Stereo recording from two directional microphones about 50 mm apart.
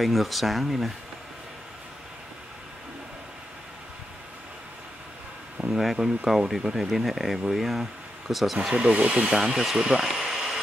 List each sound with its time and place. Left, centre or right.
0.0 s speech: centre
5.8 s speech: centre
8.5 s speech: centre
9.2 s speech: centre